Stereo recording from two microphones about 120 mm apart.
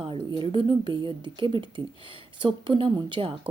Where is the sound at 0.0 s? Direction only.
40° right (ahead or behind).